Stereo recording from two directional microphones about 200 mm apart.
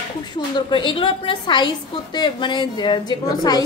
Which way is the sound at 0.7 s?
25° left (ahead or behind).